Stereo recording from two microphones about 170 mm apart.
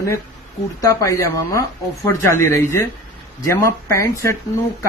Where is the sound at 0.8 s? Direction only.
20° left (ahead or behind).